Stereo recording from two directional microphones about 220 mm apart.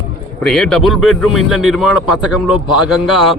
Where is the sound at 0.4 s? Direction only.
Centre (ahead or behind).